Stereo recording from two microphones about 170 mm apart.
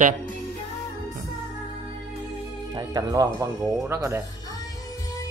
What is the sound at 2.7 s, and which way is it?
Speech, 25° right (ahead or behind).